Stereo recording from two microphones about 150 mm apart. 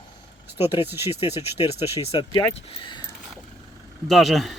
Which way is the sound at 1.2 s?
45° left (ahead or behind).